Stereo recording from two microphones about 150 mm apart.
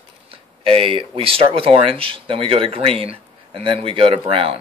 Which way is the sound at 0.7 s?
40° right (ahead or behind).